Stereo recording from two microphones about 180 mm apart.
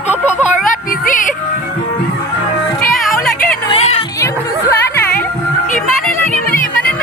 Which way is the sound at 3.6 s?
35° left (ahead or behind).